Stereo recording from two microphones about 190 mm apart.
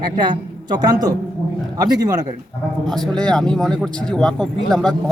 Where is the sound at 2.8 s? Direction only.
Centre (ahead or behind).